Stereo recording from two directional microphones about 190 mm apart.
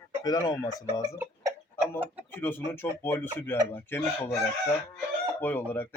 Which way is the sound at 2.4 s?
10° left (ahead or behind).